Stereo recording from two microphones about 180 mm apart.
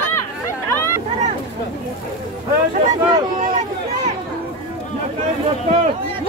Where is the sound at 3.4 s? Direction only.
40° right (ahead or behind).